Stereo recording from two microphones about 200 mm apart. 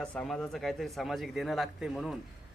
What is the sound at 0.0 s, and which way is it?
Speech, 5° left (ahead or behind).